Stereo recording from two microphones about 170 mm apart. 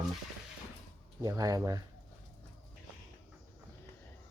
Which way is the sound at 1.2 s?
20° right (ahead or behind).